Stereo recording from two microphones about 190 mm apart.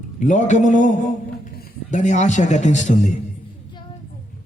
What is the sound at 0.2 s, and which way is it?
A man's voice, 40° left (ahead or behind).